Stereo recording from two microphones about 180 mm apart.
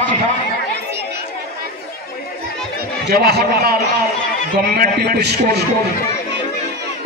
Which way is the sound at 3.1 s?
60° right (ahead or behind).